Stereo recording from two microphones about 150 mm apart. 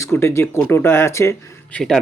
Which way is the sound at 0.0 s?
20° left (ahead or behind).